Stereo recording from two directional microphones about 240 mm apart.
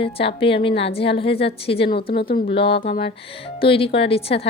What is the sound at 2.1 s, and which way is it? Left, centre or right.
Speech, left.